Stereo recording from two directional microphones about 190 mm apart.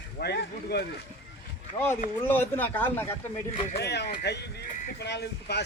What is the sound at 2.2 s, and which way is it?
Speech, 10° left (ahead or behind).